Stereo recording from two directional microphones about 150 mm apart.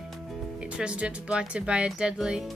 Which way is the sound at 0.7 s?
5° right (ahead or behind).